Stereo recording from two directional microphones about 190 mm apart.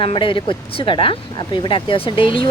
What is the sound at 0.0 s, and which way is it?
Speech, 25° left (ahead or behind).